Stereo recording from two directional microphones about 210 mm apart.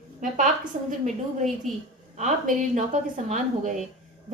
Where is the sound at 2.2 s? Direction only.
35° right (ahead or behind).